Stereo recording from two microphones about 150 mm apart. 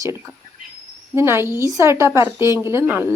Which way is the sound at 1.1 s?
15° right (ahead or behind).